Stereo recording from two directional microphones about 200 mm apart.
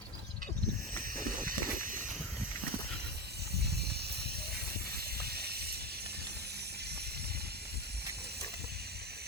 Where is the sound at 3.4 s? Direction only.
55° right (ahead or behind).